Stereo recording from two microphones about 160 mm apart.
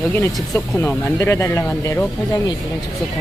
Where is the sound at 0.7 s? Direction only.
15° left (ahead or behind).